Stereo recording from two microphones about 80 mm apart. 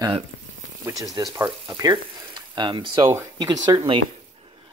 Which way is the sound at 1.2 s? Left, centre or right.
Right.